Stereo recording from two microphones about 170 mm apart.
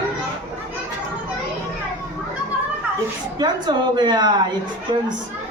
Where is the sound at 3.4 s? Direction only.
25° right (ahead or behind).